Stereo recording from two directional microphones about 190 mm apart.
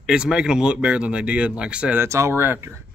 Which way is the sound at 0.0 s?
5° right (ahead or behind).